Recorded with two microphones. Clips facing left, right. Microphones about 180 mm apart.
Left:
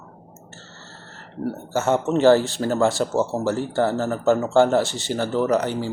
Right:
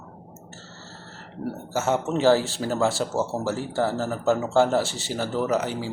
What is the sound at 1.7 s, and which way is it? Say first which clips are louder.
Speech: left 4 dB; 5° right (ahead or behind).